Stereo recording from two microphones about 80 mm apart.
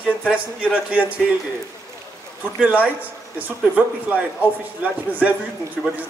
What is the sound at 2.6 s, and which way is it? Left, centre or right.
Speech, centre.